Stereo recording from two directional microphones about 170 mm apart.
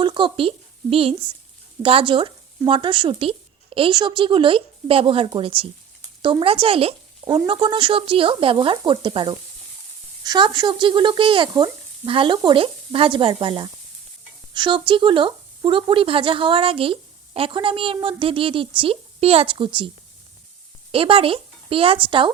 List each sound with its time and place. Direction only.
0.0 s speech: 30° right (ahead or behind)
20.9 s speech: 35° right (ahead or behind)